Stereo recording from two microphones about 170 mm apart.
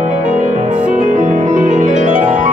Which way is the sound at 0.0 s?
50° right (ahead or behind).